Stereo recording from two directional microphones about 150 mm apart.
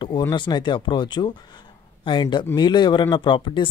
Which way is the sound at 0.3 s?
30° left (ahead or behind).